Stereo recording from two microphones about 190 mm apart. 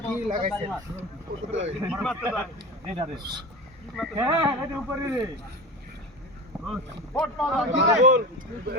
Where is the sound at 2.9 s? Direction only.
25° right (ahead or behind).